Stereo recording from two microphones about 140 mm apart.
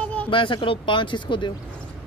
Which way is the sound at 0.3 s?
35° left (ahead or behind).